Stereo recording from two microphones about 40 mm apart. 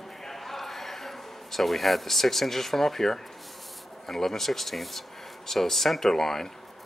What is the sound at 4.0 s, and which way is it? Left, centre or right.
Speech, centre.